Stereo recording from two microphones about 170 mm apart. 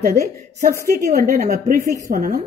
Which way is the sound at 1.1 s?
45° right (ahead or behind).